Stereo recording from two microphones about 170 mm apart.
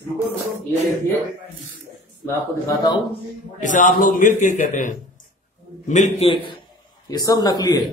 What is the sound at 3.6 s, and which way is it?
A man's voice, 50° left (ahead or behind).